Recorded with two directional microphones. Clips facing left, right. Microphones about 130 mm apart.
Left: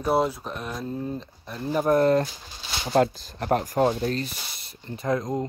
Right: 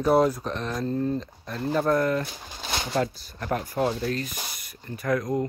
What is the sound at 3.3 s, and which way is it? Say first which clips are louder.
Speech: left 4 dB; 30° left (ahead or behind).